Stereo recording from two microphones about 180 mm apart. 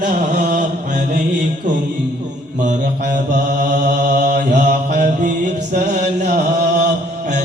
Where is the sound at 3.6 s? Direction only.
45° right (ahead or behind).